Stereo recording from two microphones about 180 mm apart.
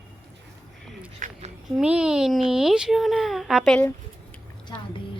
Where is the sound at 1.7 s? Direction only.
5° right (ahead or behind).